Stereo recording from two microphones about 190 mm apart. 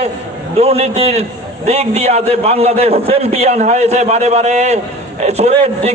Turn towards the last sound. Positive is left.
turn(degrees=-35)  # may be behind; listen again after turning